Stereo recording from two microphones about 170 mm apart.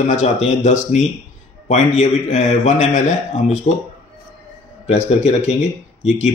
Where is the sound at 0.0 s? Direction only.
45° left (ahead or behind).